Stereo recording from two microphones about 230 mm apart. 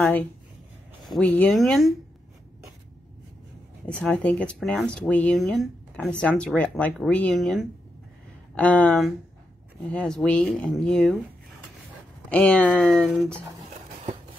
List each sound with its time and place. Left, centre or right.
0.0 s speech: centre
3.8 s speech: centre
12.3 s speech: centre